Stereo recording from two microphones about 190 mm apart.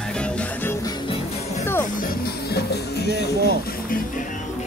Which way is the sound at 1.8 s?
50° left (ahead or behind).